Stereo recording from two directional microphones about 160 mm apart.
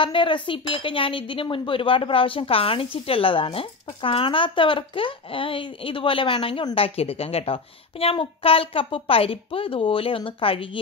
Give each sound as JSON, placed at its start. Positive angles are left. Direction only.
{"t": 0.0, "sound": "speech", "side_deg": 30}